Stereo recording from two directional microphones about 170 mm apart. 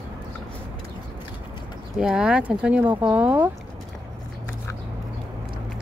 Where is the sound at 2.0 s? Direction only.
5° right (ahead or behind).